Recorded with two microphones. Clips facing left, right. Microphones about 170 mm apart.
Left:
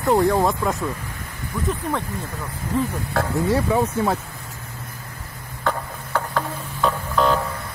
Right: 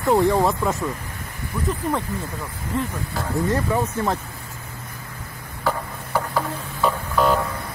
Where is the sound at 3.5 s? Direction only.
10° left (ahead or behind).